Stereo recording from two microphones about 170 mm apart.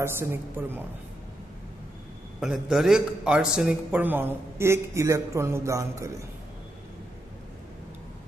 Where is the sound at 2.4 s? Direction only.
Centre (ahead or behind).